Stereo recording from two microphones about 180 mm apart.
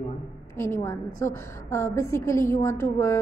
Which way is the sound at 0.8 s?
15° left (ahead or behind).